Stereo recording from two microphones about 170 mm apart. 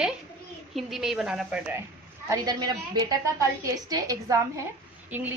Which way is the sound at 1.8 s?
20° right (ahead or behind).